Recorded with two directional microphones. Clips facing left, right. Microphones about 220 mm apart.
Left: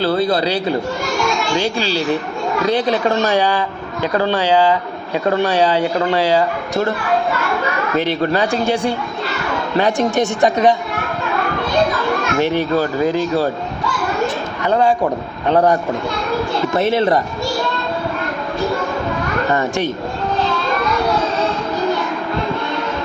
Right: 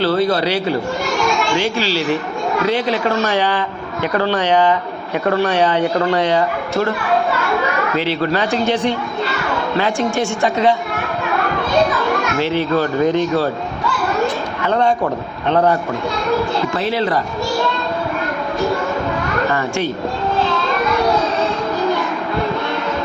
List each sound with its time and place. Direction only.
3.2 s speech: 15° left (ahead or behind)
5.2 s speech: 30° left (ahead or behind)
8.0 s speech: 15° left (ahead or behind)
12.4 s speech: 15° left (ahead or behind)
14.7 s a man's voice: 5° left (ahead or behind)
16.7 s speech: 20° left (ahead or behind)
19.5 s speech: 20° left (ahead or behind)